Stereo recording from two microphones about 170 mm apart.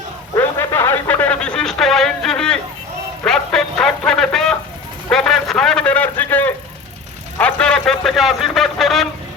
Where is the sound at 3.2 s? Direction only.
5° left (ahead or behind).